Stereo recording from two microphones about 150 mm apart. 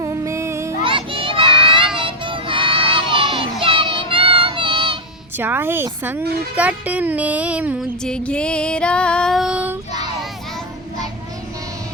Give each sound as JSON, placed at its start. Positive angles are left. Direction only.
{"t": 0.0, "sound": "music", "side_deg": -20}
{"t": 0.9, "sound": "children playing", "side_deg": -35}
{"t": 2.0, "sound": "child singing", "side_deg": -35}
{"t": 5.4, "sound": "music", "side_deg": -15}
{"t": 8.0, "sound": "female singing", "side_deg": 5}